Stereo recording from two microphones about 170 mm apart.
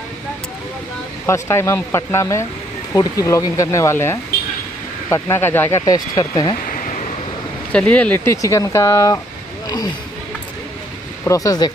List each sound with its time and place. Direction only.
1.2 s speech: 15° left (ahead or behind)
6.6 s a sound: 50° left (ahead or behind)
7.7 s speech: 5° left (ahead or behind)
11.2 s speech: 20° left (ahead or behind)